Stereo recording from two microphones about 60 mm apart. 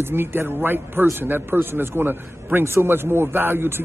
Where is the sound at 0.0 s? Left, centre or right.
Right.